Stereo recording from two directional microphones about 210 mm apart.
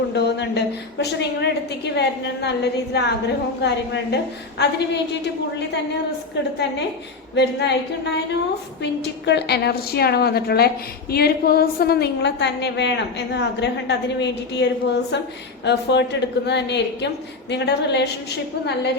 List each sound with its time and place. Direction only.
0.1 s a woman's voice: 55° left (ahead or behind)